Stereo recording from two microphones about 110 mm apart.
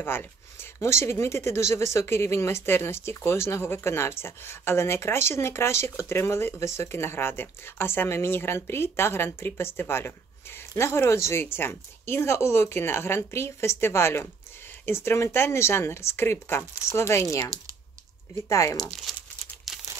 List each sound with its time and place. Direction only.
0.0 s speech: 20° left (ahead or behind)
19.1 s crumpling: centre (ahead or behind)